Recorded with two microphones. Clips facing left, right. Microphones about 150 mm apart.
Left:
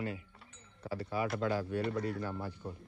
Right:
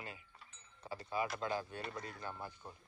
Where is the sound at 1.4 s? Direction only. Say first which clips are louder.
Left 6 dB; 25° right (ahead or behind).